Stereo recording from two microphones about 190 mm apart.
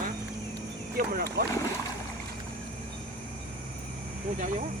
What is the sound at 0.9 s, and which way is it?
Speech, 50° right (ahead or behind).